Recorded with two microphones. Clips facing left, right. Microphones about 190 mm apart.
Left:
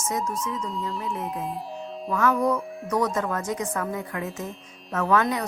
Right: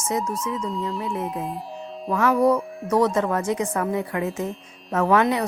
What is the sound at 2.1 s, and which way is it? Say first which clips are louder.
A woman's voice: right 4 dB; 30° right (ahead or behind).